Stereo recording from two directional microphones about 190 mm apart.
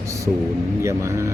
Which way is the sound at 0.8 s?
15° right (ahead or behind).